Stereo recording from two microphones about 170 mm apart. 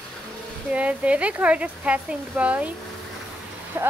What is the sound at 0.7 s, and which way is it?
Speech, 10° right (ahead or behind).